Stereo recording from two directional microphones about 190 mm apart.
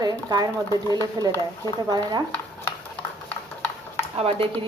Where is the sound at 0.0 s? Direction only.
20° right (ahead or behind).